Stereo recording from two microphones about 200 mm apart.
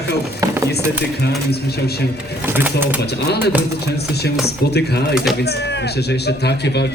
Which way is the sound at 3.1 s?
55° left (ahead or behind).